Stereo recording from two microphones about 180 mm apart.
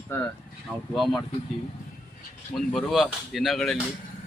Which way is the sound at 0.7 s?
Centre (ahead or behind).